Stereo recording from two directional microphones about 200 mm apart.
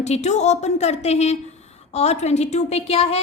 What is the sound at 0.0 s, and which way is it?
A woman's voice, 35° left (ahead or behind).